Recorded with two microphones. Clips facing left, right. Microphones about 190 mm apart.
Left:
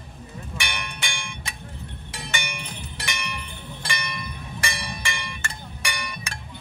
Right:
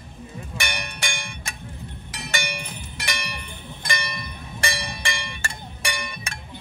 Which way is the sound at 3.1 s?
35° right (ahead or behind).